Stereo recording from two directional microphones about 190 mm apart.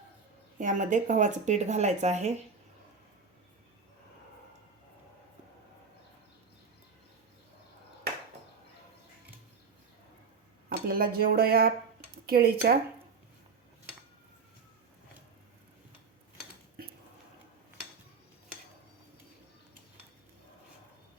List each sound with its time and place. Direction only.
0.6 s speech: 40° right (ahead or behind)
10.7 s speech: 50° right (ahead or behind)